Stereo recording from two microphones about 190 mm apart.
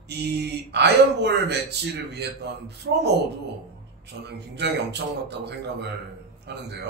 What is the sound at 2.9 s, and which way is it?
Speech, 80° right.